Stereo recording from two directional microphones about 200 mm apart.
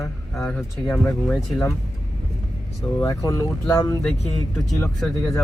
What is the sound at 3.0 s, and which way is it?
Speech, 15° left (ahead or behind).